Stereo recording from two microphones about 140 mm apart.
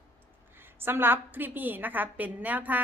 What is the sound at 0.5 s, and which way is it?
A woman's voice, 15° right (ahead or behind).